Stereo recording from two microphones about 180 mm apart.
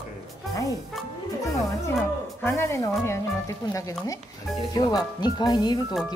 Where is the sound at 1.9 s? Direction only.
10° left (ahead or behind).